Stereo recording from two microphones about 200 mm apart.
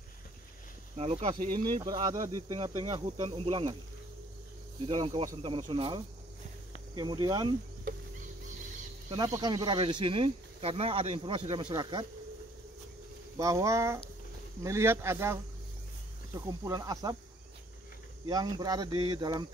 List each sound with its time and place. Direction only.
0.9 s speech: 30° right (ahead or behind)
1.7 s speech: 20° right (ahead or behind)
4.8 s speech: 25° right (ahead or behind)
9.1 s speech: 20° right (ahead or behind)
13.4 s speech: 15° right (ahead or behind)
16.3 s speech: 15° right (ahead or behind)
18.2 s speech: 20° right (ahead or behind)